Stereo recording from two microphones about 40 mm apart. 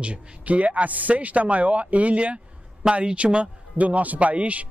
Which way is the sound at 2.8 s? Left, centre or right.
Right.